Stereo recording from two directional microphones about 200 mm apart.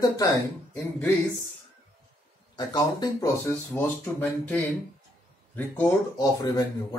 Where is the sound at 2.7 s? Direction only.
20° left (ahead or behind).